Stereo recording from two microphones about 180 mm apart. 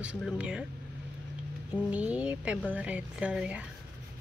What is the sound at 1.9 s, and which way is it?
A woman's voice, 10° right (ahead or behind).